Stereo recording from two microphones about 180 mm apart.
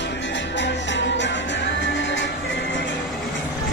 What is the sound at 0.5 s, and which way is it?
Music, 85° left.